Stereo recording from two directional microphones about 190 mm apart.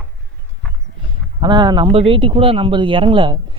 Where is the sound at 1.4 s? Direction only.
25° right (ahead or behind).